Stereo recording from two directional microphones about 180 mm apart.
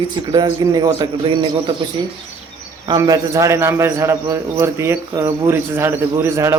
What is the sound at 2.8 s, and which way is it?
A man's voice, 20° right (ahead or behind).